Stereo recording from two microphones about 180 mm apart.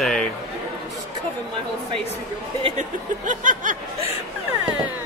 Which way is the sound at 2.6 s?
45° right (ahead or behind).